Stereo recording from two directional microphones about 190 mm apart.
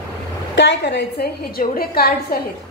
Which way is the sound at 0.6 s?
65° left (ahead or behind).